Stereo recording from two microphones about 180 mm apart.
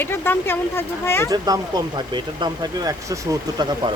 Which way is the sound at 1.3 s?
20° right (ahead or behind).